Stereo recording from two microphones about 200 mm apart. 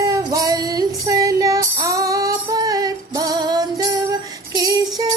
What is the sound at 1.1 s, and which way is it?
Female singing, 15° right (ahead or behind).